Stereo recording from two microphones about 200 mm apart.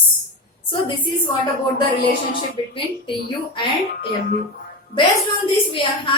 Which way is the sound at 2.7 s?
25° left (ahead or behind).